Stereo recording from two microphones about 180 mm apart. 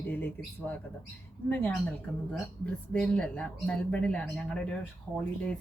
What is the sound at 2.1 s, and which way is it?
A woman's voice, centre (ahead or behind).